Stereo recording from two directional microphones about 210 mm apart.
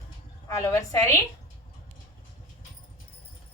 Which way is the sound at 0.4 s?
15° left (ahead or behind).